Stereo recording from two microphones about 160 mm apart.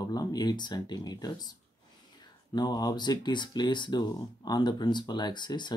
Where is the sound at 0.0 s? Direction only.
25° left (ahead or behind).